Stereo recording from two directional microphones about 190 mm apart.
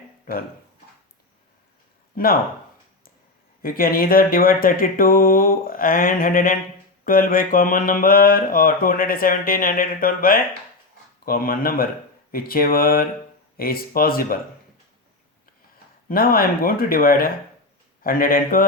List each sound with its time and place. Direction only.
2.1 s speech: 50° left (ahead or behind)
3.6 s mantra: 50° left (ahead or behind)
16.0 s mantra: 50° left (ahead or behind)